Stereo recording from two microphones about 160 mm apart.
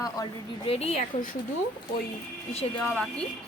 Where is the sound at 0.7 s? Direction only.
40° left (ahead or behind).